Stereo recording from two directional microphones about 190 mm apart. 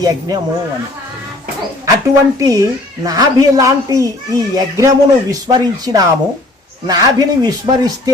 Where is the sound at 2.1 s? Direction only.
15° right (ahead or behind).